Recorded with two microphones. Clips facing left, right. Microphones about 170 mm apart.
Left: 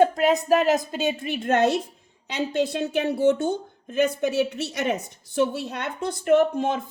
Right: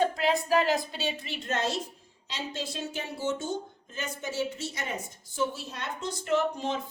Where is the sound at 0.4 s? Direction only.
45° left (ahead or behind).